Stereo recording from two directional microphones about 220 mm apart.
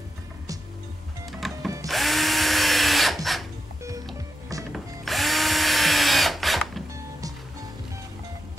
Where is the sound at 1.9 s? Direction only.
Centre (ahead or behind).